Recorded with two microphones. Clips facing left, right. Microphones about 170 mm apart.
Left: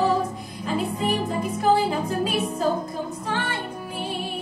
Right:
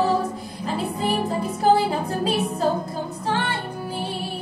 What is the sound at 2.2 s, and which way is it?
Music, 35° right (ahead or behind).